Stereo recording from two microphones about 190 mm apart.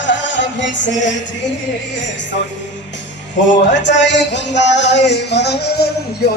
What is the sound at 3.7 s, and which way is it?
Music, 70° left (ahead or behind).